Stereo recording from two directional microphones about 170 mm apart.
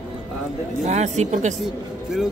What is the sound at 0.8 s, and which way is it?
Speech, 45° right (ahead or behind).